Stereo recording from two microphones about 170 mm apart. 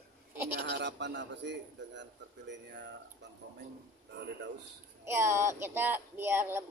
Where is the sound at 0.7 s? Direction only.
85° right.